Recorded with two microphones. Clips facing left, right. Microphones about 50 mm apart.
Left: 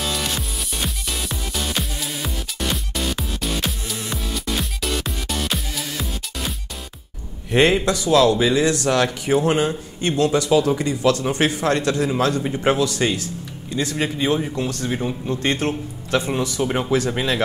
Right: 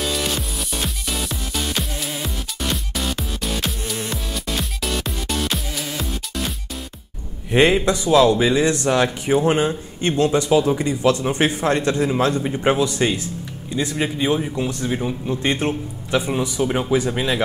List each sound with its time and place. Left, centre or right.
0.0 s music: centre
7.8 s speech: right
12.4 s a man's voice: centre
12.7 s speech: right
13.9 s speech: centre
14.5 s speech: centre
14.9 s speech: centre
15.2 s a man's voice: centre
16.6 s speech: centre